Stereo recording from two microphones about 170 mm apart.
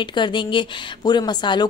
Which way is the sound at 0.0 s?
25° left (ahead or behind).